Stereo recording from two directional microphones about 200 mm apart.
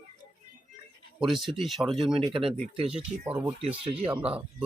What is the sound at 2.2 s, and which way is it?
Speech, 25° right (ahead or behind).